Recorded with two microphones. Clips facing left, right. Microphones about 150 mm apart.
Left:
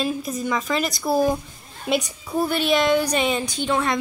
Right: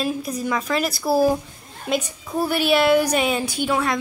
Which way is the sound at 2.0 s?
15° left (ahead or behind).